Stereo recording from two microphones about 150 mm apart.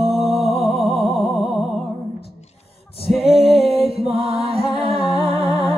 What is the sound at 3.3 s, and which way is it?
Music, 40° right (ahead or behind).